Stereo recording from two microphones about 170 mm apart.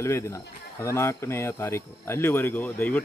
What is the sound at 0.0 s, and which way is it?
Speech, 15° left (ahead or behind).